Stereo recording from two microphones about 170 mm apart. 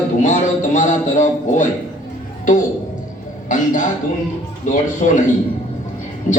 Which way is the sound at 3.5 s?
50° left (ahead or behind).